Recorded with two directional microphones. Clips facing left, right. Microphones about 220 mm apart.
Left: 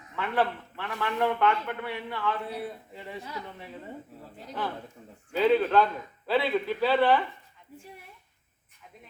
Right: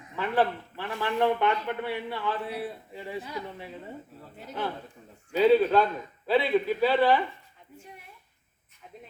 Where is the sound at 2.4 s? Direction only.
5° right (ahead or behind).